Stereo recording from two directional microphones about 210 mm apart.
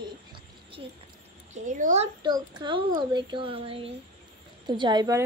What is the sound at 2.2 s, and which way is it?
A child's voice, 20° right (ahead or behind).